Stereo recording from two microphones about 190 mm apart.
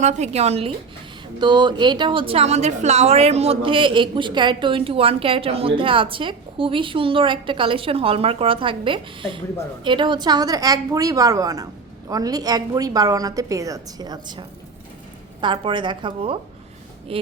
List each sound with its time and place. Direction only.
0.0 s a woman's voice: 35° right (ahead or behind)